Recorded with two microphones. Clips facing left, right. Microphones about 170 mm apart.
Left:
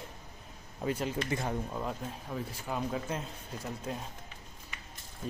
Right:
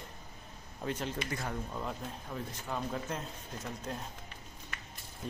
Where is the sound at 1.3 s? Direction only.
20° left (ahead or behind).